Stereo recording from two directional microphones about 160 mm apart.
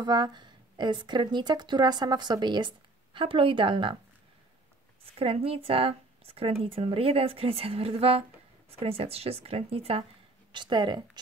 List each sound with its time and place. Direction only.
0.0 s a woman's voice: 25° right (ahead or behind)
5.0 s a woman's voice: 35° right (ahead or behind)